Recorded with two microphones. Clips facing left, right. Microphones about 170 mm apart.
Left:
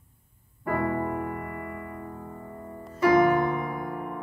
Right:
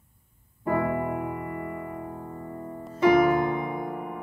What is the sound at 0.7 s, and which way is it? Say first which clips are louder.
Keyboard: right 1 dB; 10° right (ahead or behind).